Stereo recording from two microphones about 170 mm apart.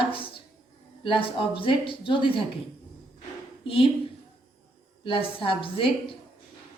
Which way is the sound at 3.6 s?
30° left (ahead or behind).